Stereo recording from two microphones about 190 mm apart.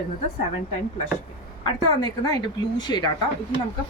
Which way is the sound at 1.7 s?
20° left (ahead or behind).